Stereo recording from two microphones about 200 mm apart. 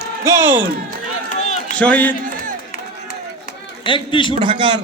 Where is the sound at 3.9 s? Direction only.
25° left (ahead or behind).